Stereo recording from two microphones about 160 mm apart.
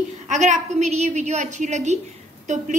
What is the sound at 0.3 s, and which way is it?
A woman's voice, 45° right (ahead or behind).